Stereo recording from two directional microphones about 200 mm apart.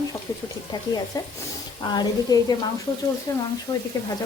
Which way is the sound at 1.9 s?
20° left (ahead or behind).